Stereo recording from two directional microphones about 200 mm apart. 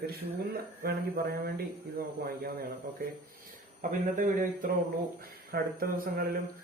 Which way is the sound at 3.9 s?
40° right (ahead or behind).